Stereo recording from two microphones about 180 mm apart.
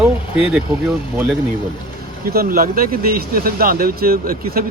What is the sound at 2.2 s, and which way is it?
Speech, 55° right (ahead or behind).